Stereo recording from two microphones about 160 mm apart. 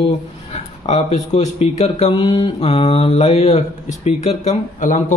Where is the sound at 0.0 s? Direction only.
40° left (ahead or behind).